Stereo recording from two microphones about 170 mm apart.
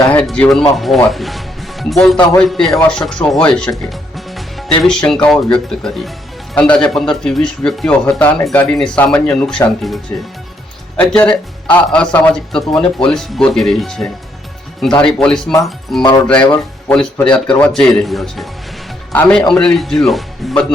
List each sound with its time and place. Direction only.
0.1 s speech: 10° left (ahead or behind)